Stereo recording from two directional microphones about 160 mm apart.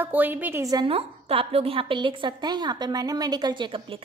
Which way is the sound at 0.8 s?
35° right (ahead or behind).